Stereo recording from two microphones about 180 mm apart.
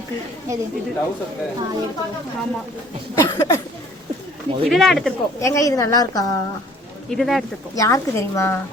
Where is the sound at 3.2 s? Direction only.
20° left (ahead or behind).